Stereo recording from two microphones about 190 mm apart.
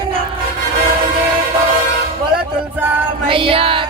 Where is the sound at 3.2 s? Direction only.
30° right (ahead or behind).